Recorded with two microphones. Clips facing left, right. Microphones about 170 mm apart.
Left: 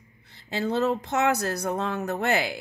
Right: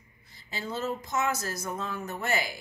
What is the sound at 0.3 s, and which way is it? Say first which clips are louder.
A woman's voice: left 9 dB; 65° left (ahead or behind).